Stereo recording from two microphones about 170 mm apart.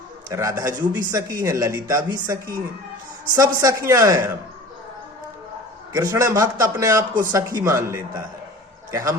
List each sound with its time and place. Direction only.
0.3 s speech: 20° right (ahead or behind)
5.9 s a man's voice: 20° right (ahead or behind)